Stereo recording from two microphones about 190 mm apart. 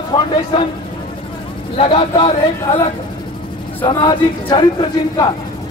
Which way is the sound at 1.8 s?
30° left (ahead or behind).